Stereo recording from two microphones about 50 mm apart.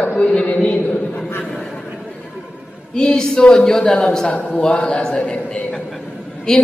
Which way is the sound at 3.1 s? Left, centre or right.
Centre.